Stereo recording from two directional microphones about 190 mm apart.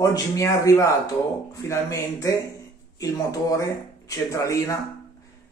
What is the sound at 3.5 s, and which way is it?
Speech, 15° left (ahead or behind).